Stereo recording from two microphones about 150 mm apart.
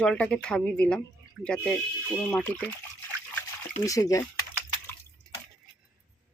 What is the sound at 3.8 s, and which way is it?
Speech, 20° left (ahead or behind).